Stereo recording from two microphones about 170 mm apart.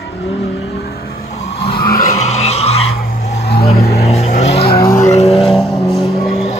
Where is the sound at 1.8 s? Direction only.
60° left (ahead or behind).